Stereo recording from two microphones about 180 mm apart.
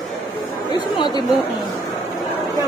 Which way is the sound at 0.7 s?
25° left (ahead or behind).